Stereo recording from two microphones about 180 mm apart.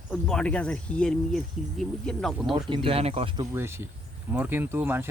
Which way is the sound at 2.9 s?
35° right (ahead or behind).